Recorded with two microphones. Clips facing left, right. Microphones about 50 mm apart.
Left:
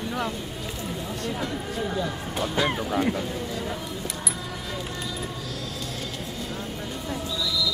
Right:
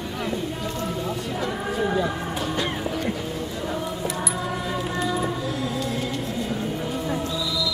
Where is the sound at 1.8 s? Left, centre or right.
Centre.